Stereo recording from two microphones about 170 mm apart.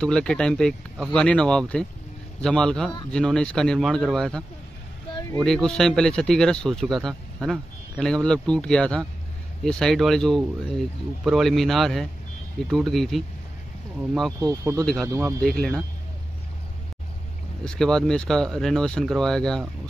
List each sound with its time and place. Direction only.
0.0 s speech: 5° left (ahead or behind)
5.4 s speech: 5° left (ahead or behind)
14.4 s speech: 15° right (ahead or behind)
15.4 s speech: 5° left (ahead or behind)
17.6 s speech: 5° left (ahead or behind)